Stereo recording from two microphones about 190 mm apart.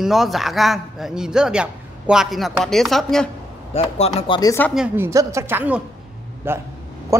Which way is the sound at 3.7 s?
35° left (ahead or behind).